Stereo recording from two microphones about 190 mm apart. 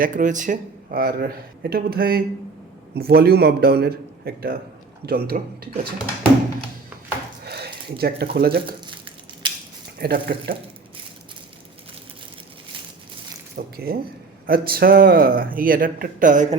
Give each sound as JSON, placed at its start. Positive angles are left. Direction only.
{"t": 0.0, "sound": "a man's voice", "side_deg": -45}
{"t": 7.4, "sound": "speech", "side_deg": -60}
{"t": 10.0, "sound": "a man's voice", "side_deg": -55}
{"t": 13.6, "sound": "a man's voice", "side_deg": -50}